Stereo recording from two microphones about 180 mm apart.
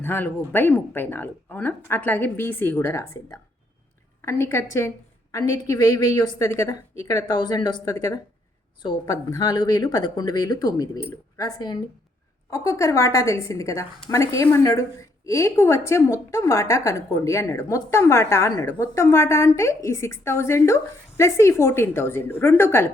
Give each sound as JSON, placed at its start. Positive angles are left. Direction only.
{"t": 0.0, "sound": "a woman's voice", "side_deg": 10}